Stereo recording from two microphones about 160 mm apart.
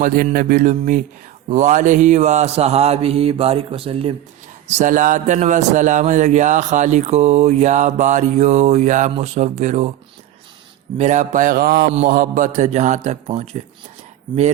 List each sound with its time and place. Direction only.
0.0 s mantra: 65° right (ahead or behind); by 4.1 s 35° right (ahead or behind)
4.8 s a man's voice: 55° right (ahead or behind)
10.9 s mantra: 45° right (ahead or behind); by 11.9 s 75° right (ahead or behind)
12.0 s a man's voice: 60° right (ahead or behind); by 13.6 s 40° right (ahead or behind)